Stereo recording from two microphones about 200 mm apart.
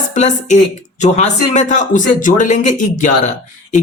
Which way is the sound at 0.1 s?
40° left (ahead or behind).